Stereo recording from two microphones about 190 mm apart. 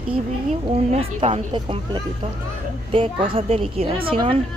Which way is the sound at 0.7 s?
30° right (ahead or behind).